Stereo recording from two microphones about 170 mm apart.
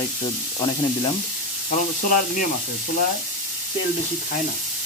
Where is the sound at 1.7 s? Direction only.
50° left (ahead or behind).